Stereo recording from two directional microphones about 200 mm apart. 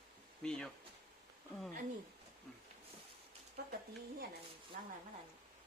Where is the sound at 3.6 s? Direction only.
50° right (ahead or behind).